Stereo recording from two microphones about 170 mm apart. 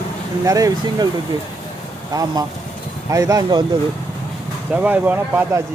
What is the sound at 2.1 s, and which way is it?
Speech, 20° right (ahead or behind).